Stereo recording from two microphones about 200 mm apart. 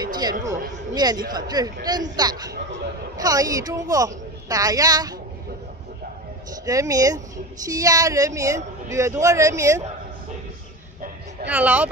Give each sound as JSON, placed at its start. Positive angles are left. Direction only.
{"t": 0.0, "sound": "a sound", "side_deg": -20}
{"t": 0.9, "sound": "speech", "side_deg": -20}
{"t": 6.5, "sound": "speech", "side_deg": -15}
{"t": 11.4, "sound": "speech", "side_deg": -10}